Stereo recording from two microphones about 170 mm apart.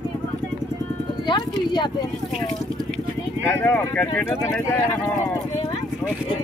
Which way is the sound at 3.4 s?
10° left (ahead or behind).